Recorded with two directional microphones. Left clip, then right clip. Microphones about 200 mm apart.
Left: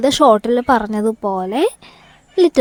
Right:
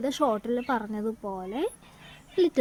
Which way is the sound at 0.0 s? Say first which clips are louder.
Left 15 dB; 50° left (ahead or behind).